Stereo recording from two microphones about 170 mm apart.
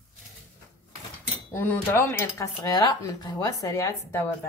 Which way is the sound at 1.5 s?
15° left (ahead or behind).